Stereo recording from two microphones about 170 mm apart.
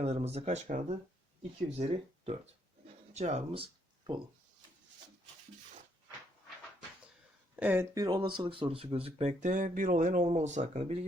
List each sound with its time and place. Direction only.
0.0 s speech: 40° right (ahead or behind)
7.5 s speech: 10° right (ahead or behind)
8.0 s speech: 25° right (ahead or behind); by 11.0 s 40° right (ahead or behind)